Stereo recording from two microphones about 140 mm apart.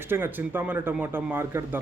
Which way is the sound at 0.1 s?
15° right (ahead or behind).